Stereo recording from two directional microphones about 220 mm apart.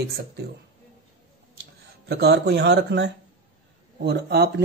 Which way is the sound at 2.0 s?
50° right (ahead or behind).